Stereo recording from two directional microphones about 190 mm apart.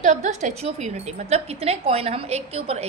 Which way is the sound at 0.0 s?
40° right (ahead or behind).